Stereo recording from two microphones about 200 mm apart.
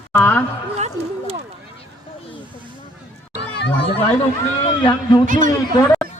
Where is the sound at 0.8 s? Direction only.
35° right (ahead or behind).